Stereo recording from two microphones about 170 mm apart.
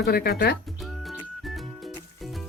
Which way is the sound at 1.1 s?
Centre (ahead or behind).